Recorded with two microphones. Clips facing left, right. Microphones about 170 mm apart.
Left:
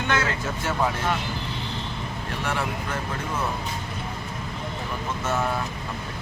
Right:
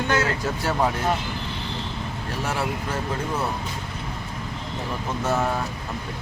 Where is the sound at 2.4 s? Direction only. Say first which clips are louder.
Right 1 dB; 40° right (ahead or behind).